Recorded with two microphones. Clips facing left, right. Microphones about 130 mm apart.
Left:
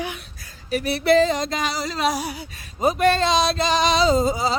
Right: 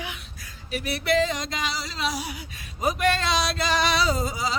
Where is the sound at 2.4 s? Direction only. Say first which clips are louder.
Left 5 dB; 30° left (ahead or behind).